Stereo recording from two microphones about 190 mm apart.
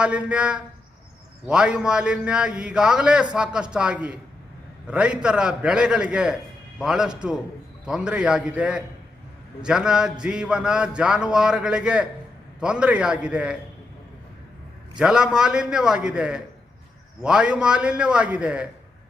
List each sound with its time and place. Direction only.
0.0 s a man's voice: 5° right (ahead or behind)
14.9 s a man's voice: 5° right (ahead or behind)